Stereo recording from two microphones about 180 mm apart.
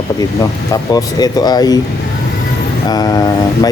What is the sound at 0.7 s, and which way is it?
Speech, 20° left (ahead or behind).